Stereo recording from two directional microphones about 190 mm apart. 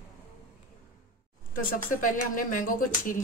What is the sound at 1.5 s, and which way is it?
A woman's voice, 45° left (ahead or behind).